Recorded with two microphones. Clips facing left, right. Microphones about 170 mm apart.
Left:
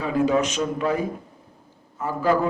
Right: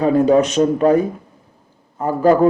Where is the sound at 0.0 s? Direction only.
40° right (ahead or behind).